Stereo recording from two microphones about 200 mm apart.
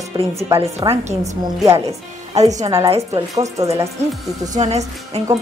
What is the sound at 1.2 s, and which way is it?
Speech, 15° right (ahead or behind).